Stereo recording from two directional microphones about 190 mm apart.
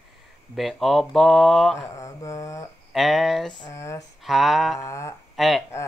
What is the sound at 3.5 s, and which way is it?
Mantra, 20° left (ahead or behind).